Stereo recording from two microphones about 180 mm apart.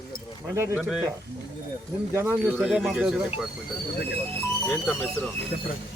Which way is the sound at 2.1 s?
10° right (ahead or behind).